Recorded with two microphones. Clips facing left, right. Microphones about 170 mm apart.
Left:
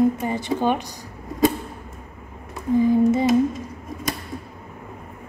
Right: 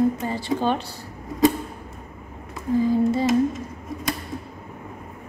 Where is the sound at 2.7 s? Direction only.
20° left (ahead or behind).